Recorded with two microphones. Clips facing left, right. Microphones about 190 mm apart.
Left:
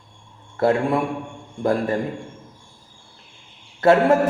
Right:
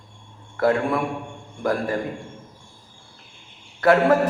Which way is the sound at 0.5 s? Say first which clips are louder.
Left 1 dB; 25° left (ahead or behind).